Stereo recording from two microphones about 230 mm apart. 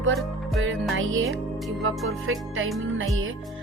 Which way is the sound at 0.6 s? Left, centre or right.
Right.